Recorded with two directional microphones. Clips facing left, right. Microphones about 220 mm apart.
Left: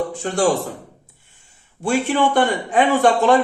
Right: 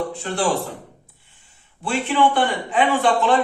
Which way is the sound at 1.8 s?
45° left (ahead or behind).